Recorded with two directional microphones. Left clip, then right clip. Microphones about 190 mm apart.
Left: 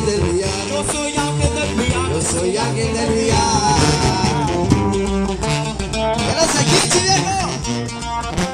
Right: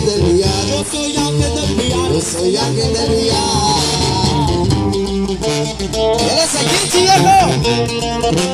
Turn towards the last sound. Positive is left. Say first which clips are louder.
# right 11 dB
turn(degrees=-45)  # may be behind; listen again after turning